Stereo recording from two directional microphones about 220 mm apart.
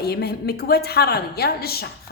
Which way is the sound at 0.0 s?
45° left (ahead or behind).